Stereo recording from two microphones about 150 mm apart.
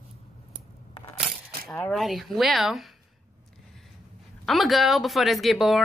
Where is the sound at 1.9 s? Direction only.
Centre (ahead or behind).